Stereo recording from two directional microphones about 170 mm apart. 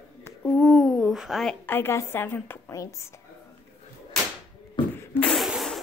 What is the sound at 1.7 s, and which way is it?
A woman's voice, 15° left (ahead or behind).